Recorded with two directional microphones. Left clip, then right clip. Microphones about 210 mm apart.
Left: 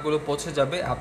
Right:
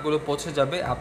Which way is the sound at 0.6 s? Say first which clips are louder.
Even; 20° right (ahead or behind).